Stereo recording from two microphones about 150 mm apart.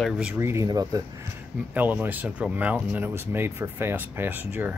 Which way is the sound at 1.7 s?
10° right (ahead or behind).